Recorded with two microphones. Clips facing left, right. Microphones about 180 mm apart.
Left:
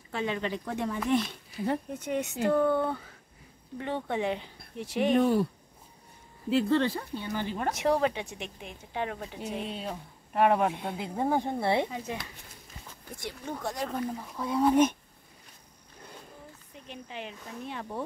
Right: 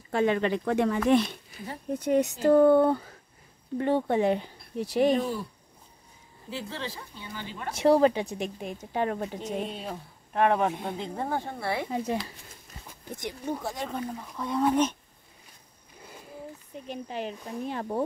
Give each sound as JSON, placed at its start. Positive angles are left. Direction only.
{"t": 0.1, "sound": "speech", "side_deg": -55}
{"t": 2.0, "sound": "a woman's voice", "side_deg": -35}
{"t": 6.5, "sound": "speech", "side_deg": 60}
{"t": 7.7, "sound": "a woman's voice", "side_deg": -30}
{"t": 9.7, "sound": "speech", "side_deg": 0}
{"t": 13.1, "sound": "speech", "side_deg": -20}
{"t": 13.5, "sound": "speech", "side_deg": -5}
{"t": 16.8, "sound": "a woman's voice", "side_deg": -40}